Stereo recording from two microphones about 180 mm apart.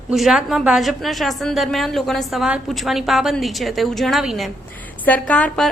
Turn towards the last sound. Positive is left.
turn(degrees=5)  # may be behind; listen again after turning